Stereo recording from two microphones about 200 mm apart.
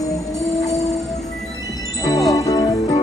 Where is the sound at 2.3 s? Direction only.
20° left (ahead or behind).